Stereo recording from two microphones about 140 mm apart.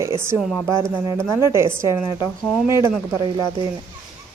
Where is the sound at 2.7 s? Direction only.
20° right (ahead or behind).